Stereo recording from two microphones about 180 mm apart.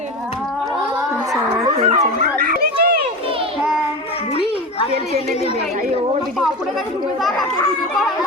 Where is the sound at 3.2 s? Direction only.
30° right (ahead or behind).